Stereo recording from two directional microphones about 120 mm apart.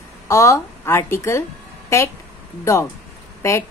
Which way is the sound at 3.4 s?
25° left (ahead or behind).